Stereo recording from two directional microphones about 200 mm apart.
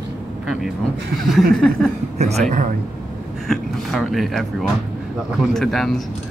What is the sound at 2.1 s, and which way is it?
Speech, 35° right (ahead or behind).